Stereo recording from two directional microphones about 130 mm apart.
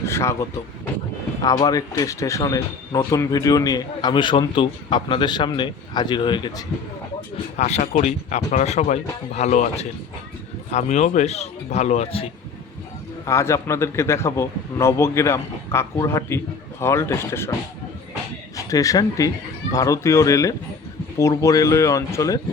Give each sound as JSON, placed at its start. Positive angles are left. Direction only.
{"t": 0.0, "sound": "vehicle", "side_deg": 20}
{"t": 1.4, "sound": "a man's voice", "side_deg": 30}
{"t": 7.5, "sound": "speech", "side_deg": 65}
{"t": 13.2, "sound": "a man's voice", "side_deg": 20}
{"t": 18.5, "sound": "a man's voice", "side_deg": 25}